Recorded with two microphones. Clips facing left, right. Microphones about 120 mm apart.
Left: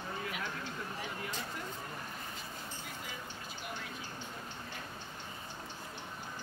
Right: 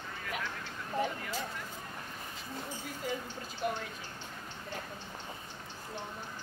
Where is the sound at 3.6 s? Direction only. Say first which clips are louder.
Right 11 dB; 40° right (ahead or behind).